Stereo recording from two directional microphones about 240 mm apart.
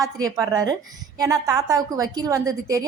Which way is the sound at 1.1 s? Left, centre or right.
Centre.